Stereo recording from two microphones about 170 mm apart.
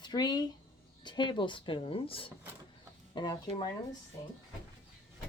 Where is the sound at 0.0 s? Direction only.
25° left (ahead or behind).